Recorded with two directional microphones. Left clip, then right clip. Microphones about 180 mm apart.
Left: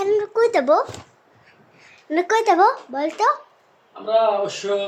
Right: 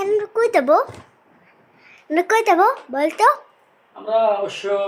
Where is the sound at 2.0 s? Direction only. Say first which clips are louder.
Right 1 dB; 10° right (ahead or behind).